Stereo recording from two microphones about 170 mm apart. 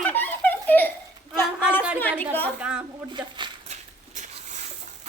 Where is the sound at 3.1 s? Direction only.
25° right (ahead or behind).